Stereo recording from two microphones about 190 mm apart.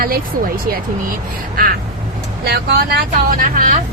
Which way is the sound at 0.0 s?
50° right (ahead or behind).